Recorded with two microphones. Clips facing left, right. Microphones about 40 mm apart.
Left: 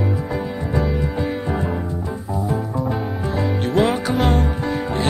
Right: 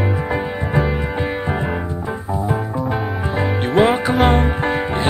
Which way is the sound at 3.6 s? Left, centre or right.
Right.